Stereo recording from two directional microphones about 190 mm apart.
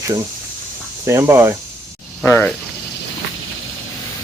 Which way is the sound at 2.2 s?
10° left (ahead or behind).